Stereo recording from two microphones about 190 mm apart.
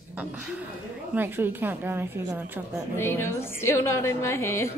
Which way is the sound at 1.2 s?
10° right (ahead or behind).